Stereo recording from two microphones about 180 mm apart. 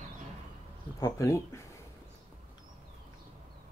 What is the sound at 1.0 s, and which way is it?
Speech, 15° left (ahead or behind).